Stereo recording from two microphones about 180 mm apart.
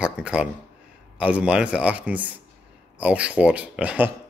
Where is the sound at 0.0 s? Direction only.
5° right (ahead or behind).